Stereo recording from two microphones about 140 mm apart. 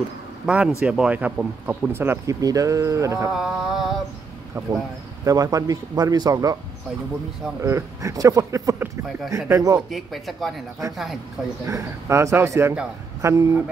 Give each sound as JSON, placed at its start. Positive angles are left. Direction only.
{"t": 0.5, "sound": "speech", "side_deg": -5}
{"t": 3.3, "sound": "a sound", "side_deg": 0}
{"t": 4.6, "sound": "a man's voice", "side_deg": -20}
{"t": 7.6, "sound": "a man's voice", "side_deg": -20}
{"t": 9.8, "sound": "a sound", "side_deg": 0}
{"t": 11.6, "sound": "a man's voice", "side_deg": -20}